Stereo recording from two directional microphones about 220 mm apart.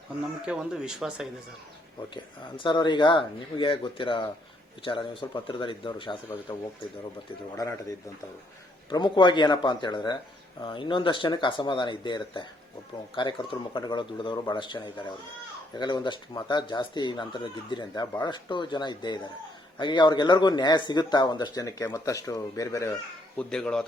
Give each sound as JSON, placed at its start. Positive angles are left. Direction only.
{"t": 0.4, "sound": "speech", "side_deg": -5}
{"t": 2.6, "sound": "speech", "side_deg": 20}